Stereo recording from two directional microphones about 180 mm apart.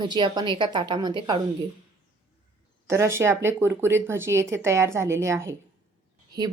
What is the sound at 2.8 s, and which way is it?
Speech, 15° right (ahead or behind).